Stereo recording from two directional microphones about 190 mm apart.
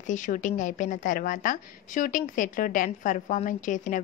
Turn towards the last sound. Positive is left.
turn(degrees=40)  # may be behind; listen again after turning